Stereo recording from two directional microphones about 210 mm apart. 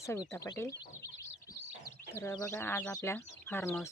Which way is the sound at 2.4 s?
10° left (ahead or behind).